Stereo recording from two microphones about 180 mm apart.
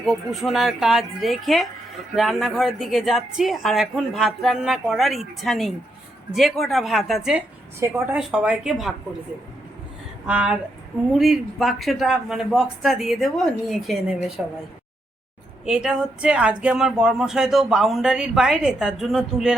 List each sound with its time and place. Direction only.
0.0 s a woman's voice: centre (ahead or behind)
10.2 s a woman's voice: 5° right (ahead or behind)
15.6 s speech: 5° right (ahead or behind)